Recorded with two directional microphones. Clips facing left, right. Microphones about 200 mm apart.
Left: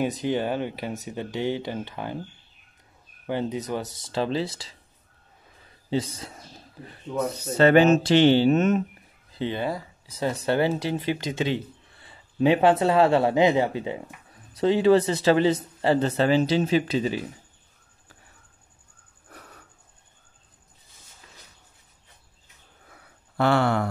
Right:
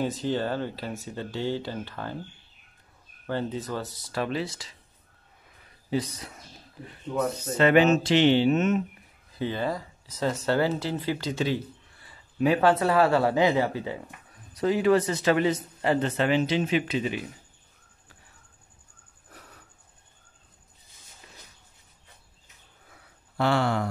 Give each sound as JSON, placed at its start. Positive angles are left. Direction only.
{"t": 0.0, "sound": "speech", "side_deg": 15}
{"t": 3.3, "sound": "speech", "side_deg": 15}
{"t": 5.9, "sound": "speech", "side_deg": 30}
{"t": 7.1, "sound": "speech", "side_deg": 0}
{"t": 7.5, "sound": "speech", "side_deg": 35}
{"t": 9.3, "sound": "speech", "side_deg": 20}
{"t": 23.3, "sound": "a sound", "side_deg": 55}